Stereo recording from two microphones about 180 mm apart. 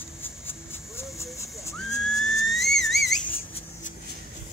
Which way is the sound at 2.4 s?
Centre (ahead or behind).